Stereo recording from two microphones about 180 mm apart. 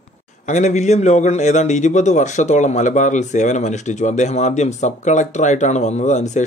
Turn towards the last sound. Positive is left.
turn(degrees=40)  # may be behind; listen again after turning